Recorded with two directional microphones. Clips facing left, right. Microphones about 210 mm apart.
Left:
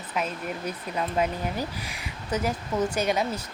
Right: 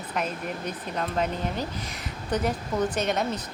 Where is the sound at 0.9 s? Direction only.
10° left (ahead or behind).